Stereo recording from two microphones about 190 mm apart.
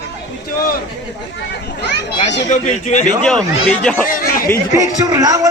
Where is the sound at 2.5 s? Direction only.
40° left (ahead or behind).